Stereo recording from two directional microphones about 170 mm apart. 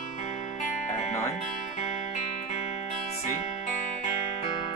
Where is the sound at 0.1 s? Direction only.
40° left (ahead or behind).